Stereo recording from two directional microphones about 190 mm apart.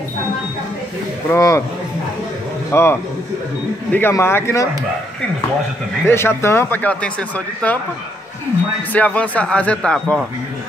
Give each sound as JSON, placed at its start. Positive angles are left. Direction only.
{"t": 1.3, "sound": "speech", "side_deg": 15}
{"t": 2.7, "sound": "speech", "side_deg": 10}
{"t": 6.0, "sound": "speech", "side_deg": 15}
{"t": 8.9, "sound": "speech", "side_deg": 10}